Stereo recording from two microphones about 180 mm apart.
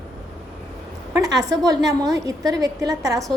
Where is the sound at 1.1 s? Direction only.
20° right (ahead or behind).